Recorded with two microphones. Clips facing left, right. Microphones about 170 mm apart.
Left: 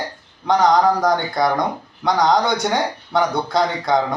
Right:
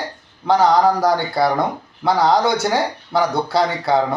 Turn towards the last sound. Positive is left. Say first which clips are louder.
# right 1 dB
turn(degrees=-5)  # may be behind; listen again after turning